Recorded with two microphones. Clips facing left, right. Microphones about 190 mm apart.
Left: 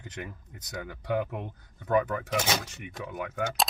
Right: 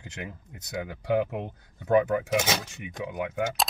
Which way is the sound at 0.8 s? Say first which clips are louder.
Right 4 dB; 25° right (ahead or behind).